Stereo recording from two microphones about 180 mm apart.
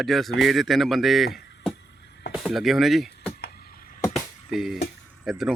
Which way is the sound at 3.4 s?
60° left (ahead or behind).